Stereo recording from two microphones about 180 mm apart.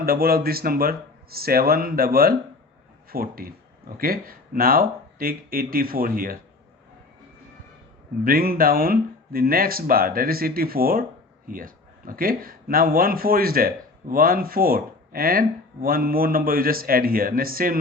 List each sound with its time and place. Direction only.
0.0 s speech: 55° right (ahead or behind)
8.2 s speech: 55° right (ahead or behind)